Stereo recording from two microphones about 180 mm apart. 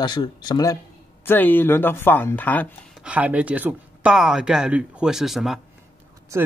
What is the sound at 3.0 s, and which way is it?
Speech, 10° right (ahead or behind).